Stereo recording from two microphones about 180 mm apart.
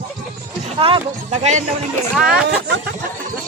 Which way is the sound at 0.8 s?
35° right (ahead or behind).